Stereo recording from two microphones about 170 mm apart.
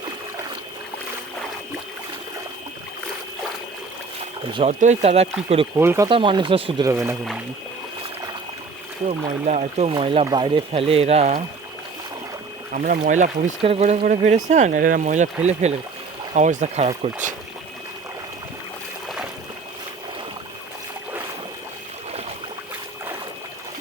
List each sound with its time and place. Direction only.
4.5 s speech: 40° right (ahead or behind)
5.7 s speech: 15° right (ahead or behind)
6.1 s speech: 30° right (ahead or behind)
6.8 s speech: 15° right (ahead or behind)
9.0 s speech: 40° right (ahead or behind)
12.7 s speech: 50° right (ahead or behind)
13.6 s speech: 35° right (ahead or behind)